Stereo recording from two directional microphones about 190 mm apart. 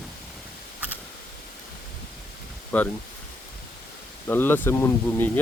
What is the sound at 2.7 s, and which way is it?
Speech, 10° left (ahead or behind).